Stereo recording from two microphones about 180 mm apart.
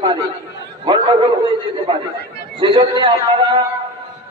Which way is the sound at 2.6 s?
25° right (ahead or behind).